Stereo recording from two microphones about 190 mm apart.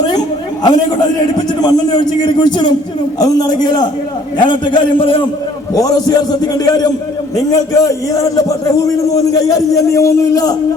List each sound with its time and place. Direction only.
0.6 s a man's voice: 20° left (ahead or behind)